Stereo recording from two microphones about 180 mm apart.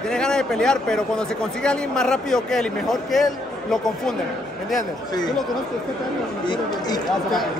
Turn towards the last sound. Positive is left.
turn(degrees=25)  # may be behind; listen again after turning